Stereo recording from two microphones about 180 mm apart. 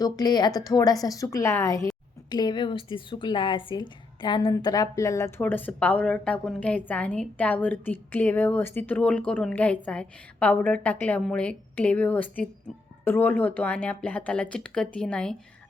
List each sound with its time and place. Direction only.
0.0 s a woman's voice: 20° left (ahead or behind); by 15.4 s 5° left (ahead or behind)